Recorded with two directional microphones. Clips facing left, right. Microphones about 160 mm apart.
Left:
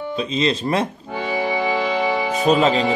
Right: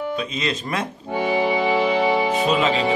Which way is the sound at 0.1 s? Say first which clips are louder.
Left 4 dB; 30° left (ahead or behind).